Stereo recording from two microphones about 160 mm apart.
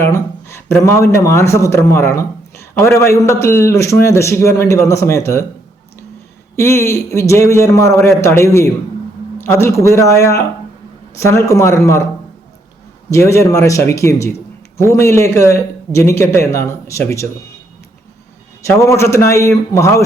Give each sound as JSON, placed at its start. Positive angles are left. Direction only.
{"t": 0.0, "sound": "speech", "side_deg": 15}
{"t": 6.6, "sound": "a man's voice", "side_deg": 15}
{"t": 13.1, "sound": "a man's voice", "side_deg": 20}
{"t": 18.6, "sound": "a man's voice", "side_deg": 15}